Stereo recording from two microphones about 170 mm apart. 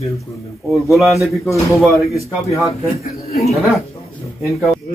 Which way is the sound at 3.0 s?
65° left (ahead or behind).